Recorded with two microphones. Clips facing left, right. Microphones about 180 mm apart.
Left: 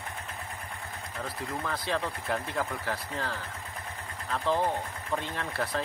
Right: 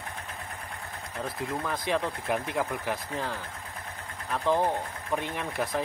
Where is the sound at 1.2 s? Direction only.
15° right (ahead or behind).